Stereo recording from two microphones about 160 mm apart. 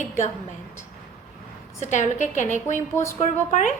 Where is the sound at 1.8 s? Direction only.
50° left (ahead or behind).